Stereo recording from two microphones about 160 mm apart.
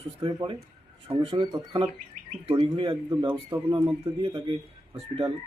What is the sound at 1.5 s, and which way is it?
Speech, 20° right (ahead or behind).